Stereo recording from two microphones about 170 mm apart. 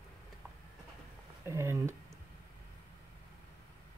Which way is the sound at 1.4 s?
15° right (ahead or behind).